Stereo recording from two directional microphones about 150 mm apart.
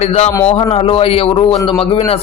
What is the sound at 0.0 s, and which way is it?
A man's voice, 45° left (ahead or behind).